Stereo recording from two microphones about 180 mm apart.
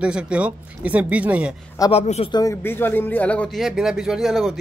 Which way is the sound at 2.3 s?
15° left (ahead or behind).